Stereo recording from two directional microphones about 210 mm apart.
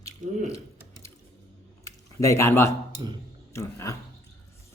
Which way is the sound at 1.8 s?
15° left (ahead or behind).